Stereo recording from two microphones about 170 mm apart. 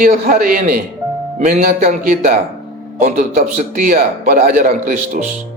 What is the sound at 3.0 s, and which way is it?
A man's voice, 45° right (ahead or behind).